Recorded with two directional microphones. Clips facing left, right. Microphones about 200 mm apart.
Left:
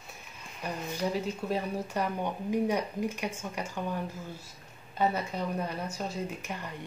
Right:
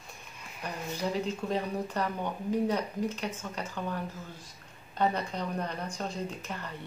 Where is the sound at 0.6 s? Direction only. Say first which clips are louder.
Left 1 dB; 10° left (ahead or behind).